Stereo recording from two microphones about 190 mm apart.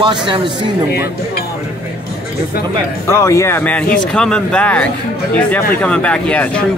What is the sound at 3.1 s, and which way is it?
Speech, 15° left (ahead or behind).